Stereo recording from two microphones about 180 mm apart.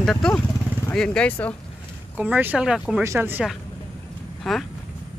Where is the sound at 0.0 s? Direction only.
5° left (ahead or behind).